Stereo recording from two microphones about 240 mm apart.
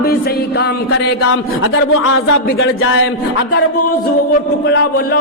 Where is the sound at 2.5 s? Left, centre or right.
Left.